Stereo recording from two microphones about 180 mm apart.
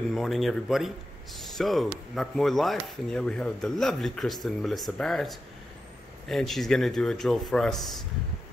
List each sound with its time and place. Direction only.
0.1 s speech: centre (ahead or behind)